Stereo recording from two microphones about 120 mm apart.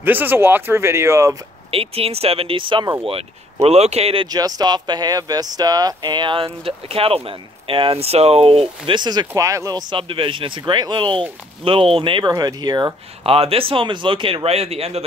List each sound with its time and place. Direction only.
0.0 s speech: 15° right (ahead or behind)
1.7 s speech: 55° right (ahead or behind)
3.6 s speech: 60° right (ahead or behind)
4.3 s speech: 30° right (ahead or behind)
9.3 s speech: 25° right (ahead or behind); by 12.3 s 45° right (ahead or behind)
12.4 s speech: 35° right (ahead or behind)
13.2 s speech: 55° right (ahead or behind)